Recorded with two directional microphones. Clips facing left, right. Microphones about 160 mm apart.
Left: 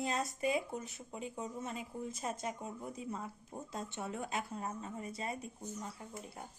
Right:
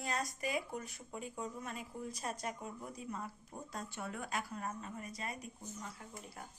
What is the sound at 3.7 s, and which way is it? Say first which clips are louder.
A woman's voice: left 2 dB; 25° left (ahead or behind).